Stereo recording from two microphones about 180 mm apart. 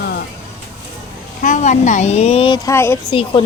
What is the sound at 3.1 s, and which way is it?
Speech, 30° left (ahead or behind).